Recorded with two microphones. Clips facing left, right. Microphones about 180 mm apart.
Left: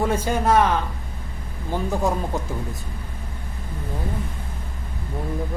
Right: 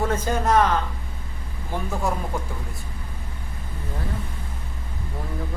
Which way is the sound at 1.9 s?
20° left (ahead or behind).